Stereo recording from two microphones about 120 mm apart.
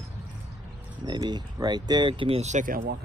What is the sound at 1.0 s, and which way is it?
Speech, 40° right (ahead or behind).